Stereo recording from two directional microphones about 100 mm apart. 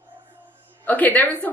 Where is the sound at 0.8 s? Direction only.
15° left (ahead or behind).